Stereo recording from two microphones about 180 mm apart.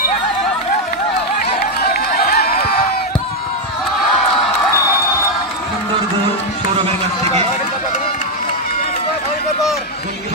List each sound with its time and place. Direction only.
2.0 s chatter: 60° left (ahead or behind)